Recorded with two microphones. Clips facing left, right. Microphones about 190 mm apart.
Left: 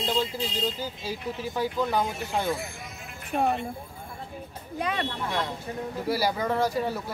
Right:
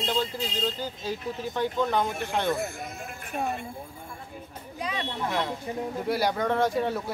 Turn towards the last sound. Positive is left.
turn(degrees=0)  # may be behind; listen again after turning